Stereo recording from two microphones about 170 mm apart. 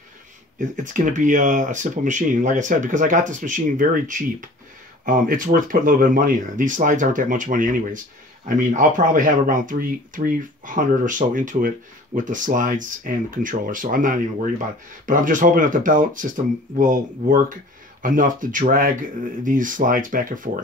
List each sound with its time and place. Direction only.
0.6 s speech: 50° right (ahead or behind)